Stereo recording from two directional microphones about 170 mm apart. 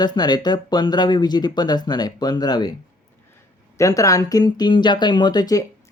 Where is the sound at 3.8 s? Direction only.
20° left (ahead or behind).